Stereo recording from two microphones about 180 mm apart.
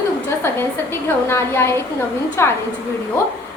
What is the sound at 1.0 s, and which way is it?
A woman's voice, 15° left (ahead or behind).